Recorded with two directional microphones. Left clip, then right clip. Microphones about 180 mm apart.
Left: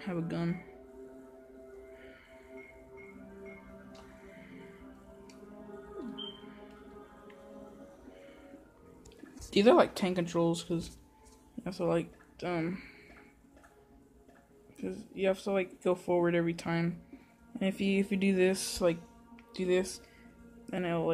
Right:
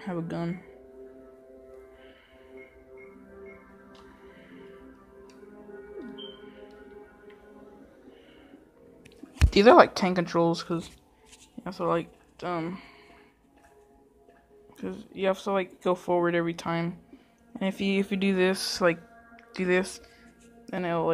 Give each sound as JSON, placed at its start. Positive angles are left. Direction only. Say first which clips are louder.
{"t": 0.0, "sound": "speech", "louder": "right 3 dB", "side_deg": -10}
{"t": 9.3, "sound": "speech", "louder": "right 7 dB", "side_deg": -15}
{"t": 11.6, "sound": "speech", "louder": "right 4 dB", "side_deg": 0}
{"t": 14.8, "sound": "speech", "louder": "right 3 dB", "side_deg": -10}
{"t": 19.5, "sound": "speech", "louder": "right 4 dB", "side_deg": -10}